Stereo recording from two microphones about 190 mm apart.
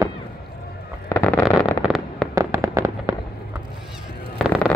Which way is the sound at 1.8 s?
Centre (ahead or behind).